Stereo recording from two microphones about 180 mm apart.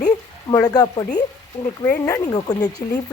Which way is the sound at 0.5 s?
20° left (ahead or behind).